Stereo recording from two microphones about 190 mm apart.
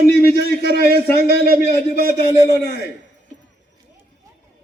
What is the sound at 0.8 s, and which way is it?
Speech, 55° right (ahead or behind).